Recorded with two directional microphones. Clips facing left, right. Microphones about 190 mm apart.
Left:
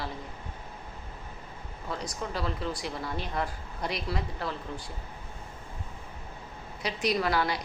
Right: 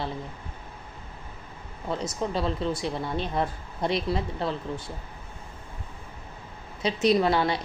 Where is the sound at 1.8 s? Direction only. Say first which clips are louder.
Right 6 dB; 25° right (ahead or behind).